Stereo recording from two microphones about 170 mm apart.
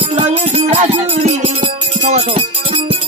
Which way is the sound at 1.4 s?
30° right (ahead or behind).